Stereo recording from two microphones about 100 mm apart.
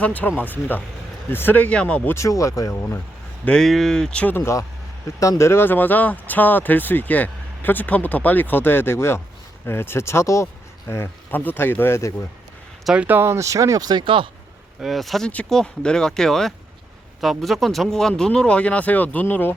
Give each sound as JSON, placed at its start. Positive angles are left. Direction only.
{"t": 0.0, "sound": "speech", "side_deg": 15}
{"t": 2.1, "sound": "speech", "side_deg": 30}
{"t": 3.4, "sound": "speech", "side_deg": 5}
{"t": 5.2, "sound": "speech", "side_deg": 30}
{"t": 12.8, "sound": "speech", "side_deg": -5}
{"t": 13.1, "sound": "speech", "side_deg": -20}
{"t": 14.0, "sound": "speech", "side_deg": -60}
{"t": 14.8, "sound": "speech", "side_deg": 0}